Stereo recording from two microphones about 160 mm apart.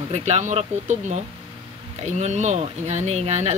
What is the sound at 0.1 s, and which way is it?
Speech, 45° right (ahead or behind).